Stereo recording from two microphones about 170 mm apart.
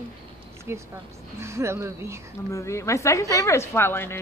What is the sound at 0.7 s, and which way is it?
Speech, 15° right (ahead or behind).